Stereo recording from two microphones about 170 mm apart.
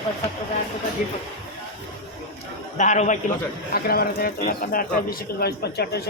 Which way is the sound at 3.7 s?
60° left (ahead or behind).